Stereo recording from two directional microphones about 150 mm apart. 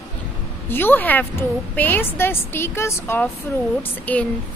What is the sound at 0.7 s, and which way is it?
A woman's voice, 15° left (ahead or behind).